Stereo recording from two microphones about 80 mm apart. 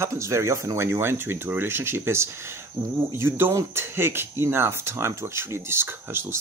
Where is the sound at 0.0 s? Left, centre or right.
Right.